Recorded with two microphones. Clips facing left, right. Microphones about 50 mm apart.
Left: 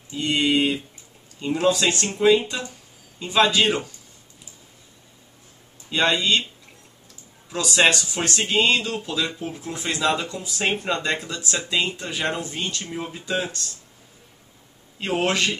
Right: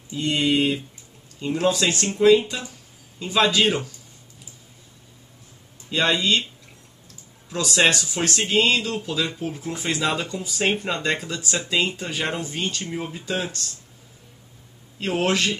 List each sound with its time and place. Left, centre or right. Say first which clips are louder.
0.1 s speech: even; centre
5.9 s speech: even; centre
7.4 s speech: left 1 dB; centre
15.0 s speech: even; centre